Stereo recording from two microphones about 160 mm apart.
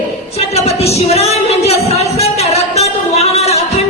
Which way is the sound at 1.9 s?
40° left (ahead or behind).